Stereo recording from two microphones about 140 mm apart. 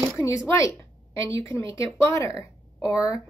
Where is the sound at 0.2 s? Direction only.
20° left (ahead or behind).